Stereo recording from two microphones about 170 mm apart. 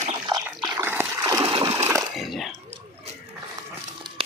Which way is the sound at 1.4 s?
35° right (ahead or behind).